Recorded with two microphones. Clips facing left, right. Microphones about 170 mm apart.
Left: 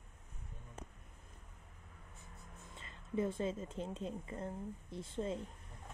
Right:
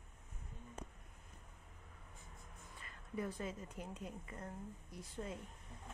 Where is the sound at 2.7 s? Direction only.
25° left (ahead or behind).